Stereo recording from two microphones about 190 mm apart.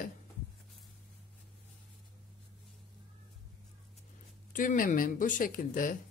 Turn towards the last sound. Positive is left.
turn(degrees=45)  # may be behind; listen again after turning